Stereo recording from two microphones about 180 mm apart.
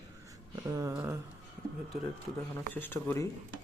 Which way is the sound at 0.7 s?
15° right (ahead or behind).